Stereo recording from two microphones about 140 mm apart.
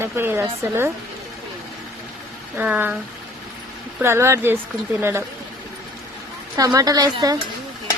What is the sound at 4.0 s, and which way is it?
Speech, 20° right (ahead or behind).